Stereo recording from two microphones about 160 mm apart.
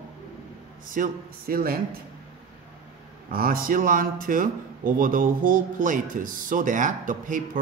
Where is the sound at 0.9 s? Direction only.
60° right (ahead or behind).